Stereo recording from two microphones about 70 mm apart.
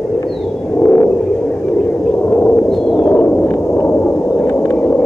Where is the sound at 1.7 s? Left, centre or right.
Centre.